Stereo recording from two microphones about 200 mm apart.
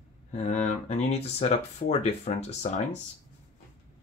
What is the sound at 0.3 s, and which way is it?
Speech, 35° left (ahead or behind).